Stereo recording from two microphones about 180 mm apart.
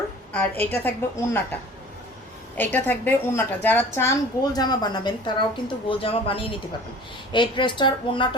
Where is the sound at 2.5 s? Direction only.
10° left (ahead or behind).